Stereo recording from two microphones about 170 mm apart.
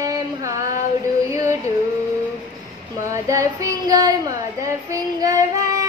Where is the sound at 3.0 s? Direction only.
20° right (ahead or behind).